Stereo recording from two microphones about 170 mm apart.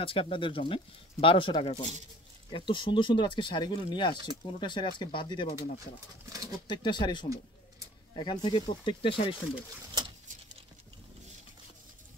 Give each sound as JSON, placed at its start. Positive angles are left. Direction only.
{"t": 0.0, "sound": "speech", "side_deg": 30}
{"t": 6.2, "sound": "speech", "side_deg": -20}
{"t": 6.7, "sound": "speech", "side_deg": 25}